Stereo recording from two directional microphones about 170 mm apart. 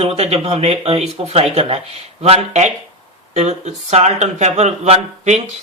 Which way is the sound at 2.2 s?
40° right (ahead or behind).